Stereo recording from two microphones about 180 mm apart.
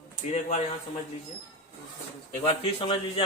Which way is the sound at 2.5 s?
30° left (ahead or behind).